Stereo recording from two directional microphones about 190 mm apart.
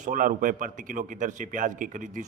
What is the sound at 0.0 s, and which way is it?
A man's voice, 45° right (ahead or behind).